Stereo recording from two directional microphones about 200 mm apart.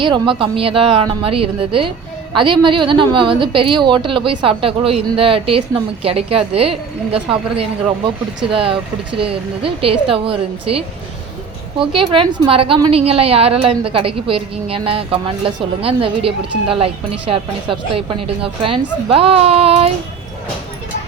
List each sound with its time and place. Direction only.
0.0 s a woman's voice: 25° right (ahead or behind)